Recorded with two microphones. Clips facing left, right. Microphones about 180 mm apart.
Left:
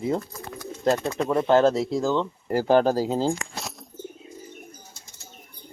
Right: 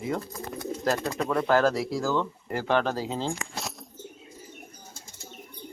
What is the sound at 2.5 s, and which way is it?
Speech, 35° left (ahead or behind).